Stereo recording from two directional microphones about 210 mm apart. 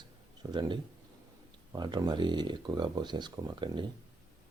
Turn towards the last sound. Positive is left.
turn(degrees=-20)  # may be behind; listen again after turning